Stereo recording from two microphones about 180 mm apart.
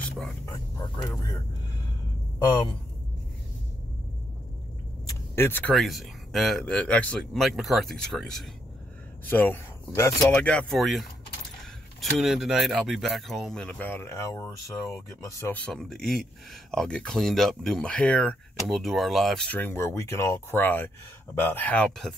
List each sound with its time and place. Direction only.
0.5 s speech: 20° left (ahead or behind)
5.0 s vehicle: 15° left (ahead or behind)
5.8 s speech: centre (ahead or behind)